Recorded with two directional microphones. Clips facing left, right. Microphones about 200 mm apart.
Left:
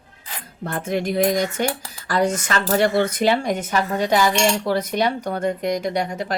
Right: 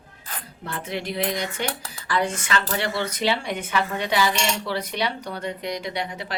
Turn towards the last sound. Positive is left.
turn(degrees=45)  # may be behind; listen again after turning